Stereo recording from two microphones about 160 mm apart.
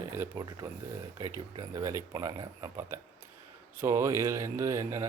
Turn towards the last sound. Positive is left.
turn(degrees=-20)  # may be behind; listen again after turning